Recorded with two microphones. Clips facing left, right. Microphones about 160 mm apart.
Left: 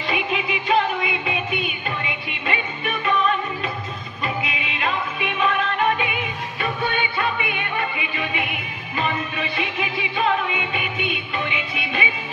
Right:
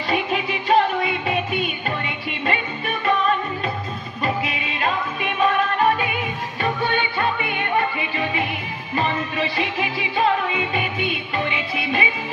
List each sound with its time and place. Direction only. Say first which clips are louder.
0.1 s music: right 2 dB; 40° right (ahead or behind)
4.2 s music: right 3 dB; 40° right (ahead or behind)